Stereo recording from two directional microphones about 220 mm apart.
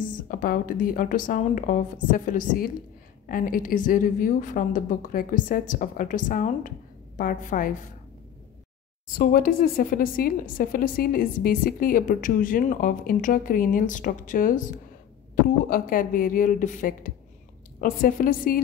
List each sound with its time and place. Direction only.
0.0 s a woman's voice: 40° left (ahead or behind)
9.2 s a woman's voice: 40° left (ahead or behind)